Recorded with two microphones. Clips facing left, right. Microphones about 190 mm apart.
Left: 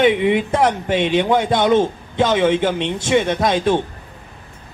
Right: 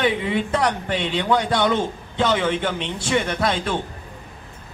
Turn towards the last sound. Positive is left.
turn(degrees=20)  # may be behind; listen again after turning